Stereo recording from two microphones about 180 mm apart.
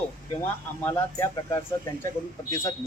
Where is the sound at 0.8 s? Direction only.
15° left (ahead or behind).